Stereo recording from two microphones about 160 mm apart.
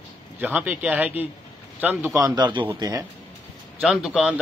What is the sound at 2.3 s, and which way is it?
Speech, 30° right (ahead or behind).